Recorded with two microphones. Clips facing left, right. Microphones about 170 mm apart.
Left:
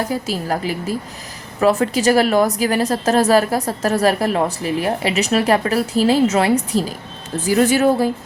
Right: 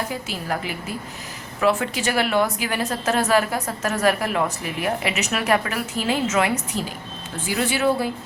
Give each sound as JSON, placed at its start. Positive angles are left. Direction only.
{"t": 0.1, "sound": "a woman's voice", "side_deg": 35}